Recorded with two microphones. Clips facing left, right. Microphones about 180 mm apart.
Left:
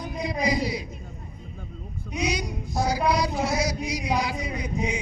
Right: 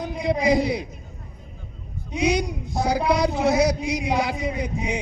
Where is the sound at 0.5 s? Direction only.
60° right (ahead or behind).